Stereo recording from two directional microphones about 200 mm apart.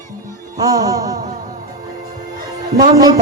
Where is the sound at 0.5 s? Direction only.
20° right (ahead or behind).